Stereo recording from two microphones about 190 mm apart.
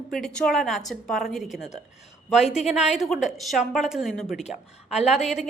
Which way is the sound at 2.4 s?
35° left (ahead or behind).